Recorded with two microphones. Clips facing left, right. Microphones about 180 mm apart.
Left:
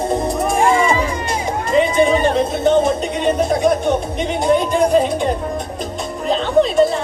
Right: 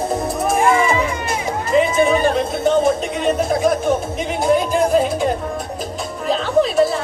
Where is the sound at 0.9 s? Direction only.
30° left (ahead or behind).